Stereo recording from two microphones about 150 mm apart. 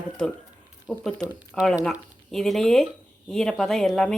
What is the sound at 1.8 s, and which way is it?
Speech, 5° left (ahead or behind).